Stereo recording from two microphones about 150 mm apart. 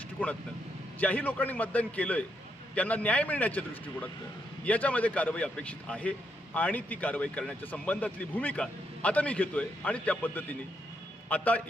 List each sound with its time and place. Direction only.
0.9 s a man's voice: 10° left (ahead or behind)
4.6 s a man's voice: 10° left (ahead or behind)